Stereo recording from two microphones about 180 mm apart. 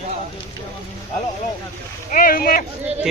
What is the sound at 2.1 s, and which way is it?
Speech, 50° left (ahead or behind).